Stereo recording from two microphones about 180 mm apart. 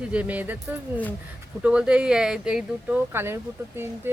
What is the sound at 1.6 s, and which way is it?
Speech, 5° right (ahead or behind).